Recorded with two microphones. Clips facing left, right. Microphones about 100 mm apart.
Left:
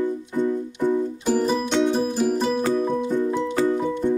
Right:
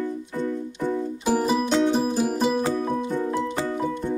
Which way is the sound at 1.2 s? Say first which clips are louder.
Right 1 dB; 10° right (ahead or behind).